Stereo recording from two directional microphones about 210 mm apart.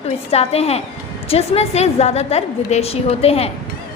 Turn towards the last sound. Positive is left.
turn(degrees=30)  # may be behind; listen again after turning